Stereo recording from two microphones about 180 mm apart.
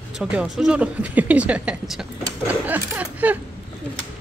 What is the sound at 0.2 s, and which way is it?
Speech, 5° right (ahead or behind).